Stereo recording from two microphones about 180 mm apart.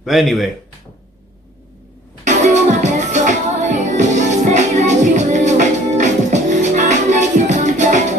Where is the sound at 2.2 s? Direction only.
40° right (ahead or behind).